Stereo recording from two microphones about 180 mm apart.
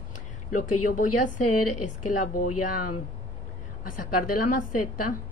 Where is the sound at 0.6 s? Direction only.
45° left (ahead or behind).